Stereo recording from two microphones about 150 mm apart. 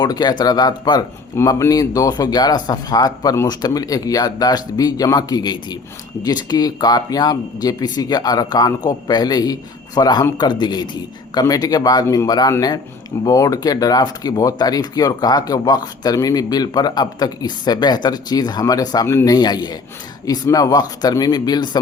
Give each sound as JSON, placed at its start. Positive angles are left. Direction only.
{"t": 0.0, "sound": "speech", "side_deg": 30}